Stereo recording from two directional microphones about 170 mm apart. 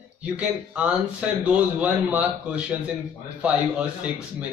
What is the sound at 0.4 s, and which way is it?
A man's voice, 5° right (ahead or behind).